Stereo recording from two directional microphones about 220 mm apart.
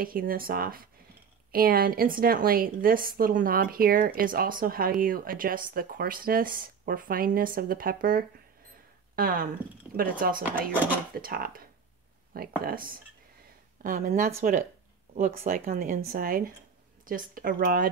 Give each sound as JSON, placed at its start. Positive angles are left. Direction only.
{"t": 0.0, "sound": "a woman's voice", "side_deg": -40}
{"t": 12.6, "sound": "a woman's voice", "side_deg": -40}